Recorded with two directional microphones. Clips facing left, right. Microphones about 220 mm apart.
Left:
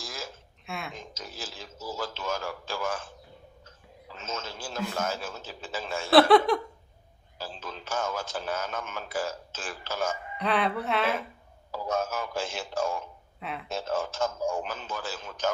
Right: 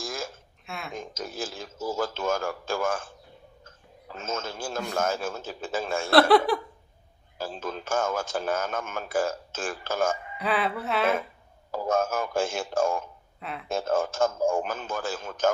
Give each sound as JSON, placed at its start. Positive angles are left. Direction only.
{"t": 0.0, "sound": "a sound", "side_deg": -50}
{"t": 0.7, "sound": "a sound", "side_deg": 0}
{"t": 0.9, "sound": "speech", "side_deg": -50}
{"t": 4.1, "sound": "speech", "side_deg": -50}
{"t": 6.1, "sound": "speech", "side_deg": 0}
{"t": 7.3, "sound": "speech", "side_deg": -50}
{"t": 10.3, "sound": "speech", "side_deg": -5}
{"t": 11.7, "sound": "speech", "side_deg": -50}
{"t": 13.4, "sound": "speech", "side_deg": 0}
{"t": 13.7, "sound": "speech", "side_deg": -50}